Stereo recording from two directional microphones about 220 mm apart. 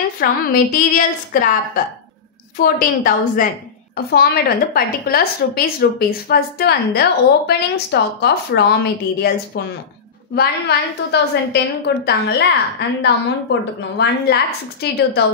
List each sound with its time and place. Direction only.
0.2 s a woman's voice: 40° left (ahead or behind)
2.6 s a woman's voice: 40° left (ahead or behind)
10.3 s a woman's voice: 45° left (ahead or behind)